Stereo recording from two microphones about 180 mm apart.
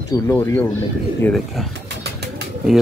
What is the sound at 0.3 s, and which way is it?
A man's voice, 10° left (ahead or behind).